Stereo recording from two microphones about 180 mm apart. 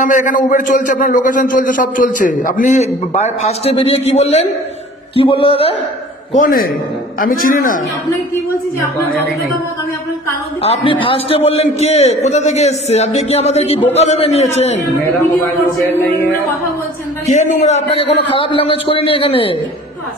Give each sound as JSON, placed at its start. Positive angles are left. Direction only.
{"t": 0.0, "sound": "a man's voice", "side_deg": 45}
{"t": 6.3, "sound": "a man's voice", "side_deg": 50}
{"t": 10.6, "sound": "a man's voice", "side_deg": 30}
{"t": 15.0, "sound": "a man's voice", "side_deg": 10}
{"t": 17.3, "sound": "a man's voice", "side_deg": 45}